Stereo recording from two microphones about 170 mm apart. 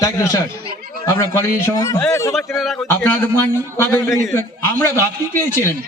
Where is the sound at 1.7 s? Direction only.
15° left (ahead or behind).